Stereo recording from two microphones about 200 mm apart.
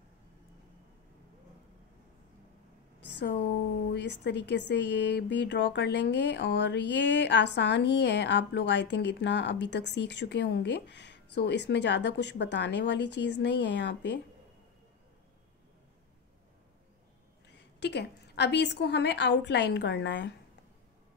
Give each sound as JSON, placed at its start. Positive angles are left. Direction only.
{"t": 3.9, "sound": "speech", "side_deg": 60}
{"t": 17.5, "sound": "a woman's voice", "side_deg": 60}